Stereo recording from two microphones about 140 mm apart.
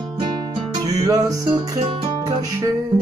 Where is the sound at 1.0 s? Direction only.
25° right (ahead or behind).